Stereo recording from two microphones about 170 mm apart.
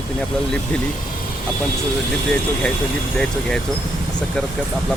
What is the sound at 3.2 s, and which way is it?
Speech, 5° left (ahead or behind).